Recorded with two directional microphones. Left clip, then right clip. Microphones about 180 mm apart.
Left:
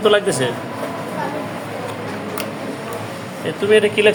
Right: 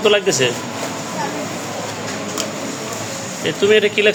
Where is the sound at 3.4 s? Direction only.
25° right (ahead or behind).